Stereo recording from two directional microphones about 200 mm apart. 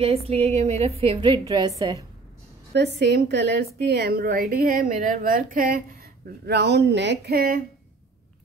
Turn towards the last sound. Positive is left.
turn(degrees=-50)  # may be behind; listen again after turning